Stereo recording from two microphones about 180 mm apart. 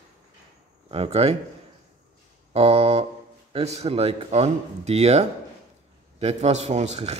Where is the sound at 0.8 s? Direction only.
35° right (ahead or behind).